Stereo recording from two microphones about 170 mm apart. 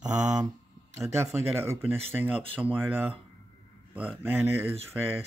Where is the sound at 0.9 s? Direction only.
15° right (ahead or behind).